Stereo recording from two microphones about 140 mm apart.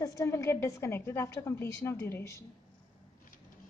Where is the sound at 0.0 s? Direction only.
20° left (ahead or behind).